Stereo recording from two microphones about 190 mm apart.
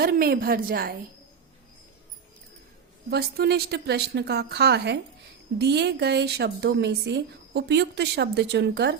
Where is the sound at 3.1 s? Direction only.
55° right (ahead or behind).